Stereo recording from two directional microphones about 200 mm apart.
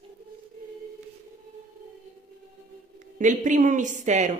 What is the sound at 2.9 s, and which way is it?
Speech, 40° right (ahead or behind).